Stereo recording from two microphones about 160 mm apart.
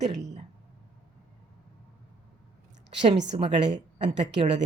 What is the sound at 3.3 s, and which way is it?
Speech, 30° right (ahead or behind).